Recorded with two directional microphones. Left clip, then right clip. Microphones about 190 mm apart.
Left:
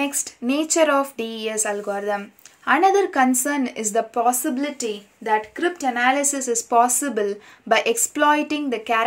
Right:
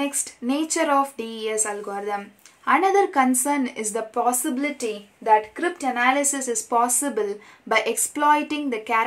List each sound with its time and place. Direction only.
0.0 s a woman's voice: 30° left (ahead or behind)